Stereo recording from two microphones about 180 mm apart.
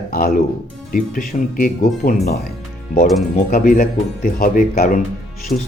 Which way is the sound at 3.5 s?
50° left (ahead or behind).